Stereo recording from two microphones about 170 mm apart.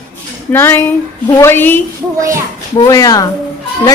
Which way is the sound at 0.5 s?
15° left (ahead or behind).